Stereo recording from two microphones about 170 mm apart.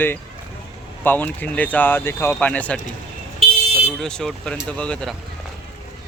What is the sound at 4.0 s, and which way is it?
Speech, 5° left (ahead or behind).